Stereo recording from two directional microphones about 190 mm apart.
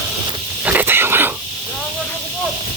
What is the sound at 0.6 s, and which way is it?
Wild animals, 10° right (ahead or behind).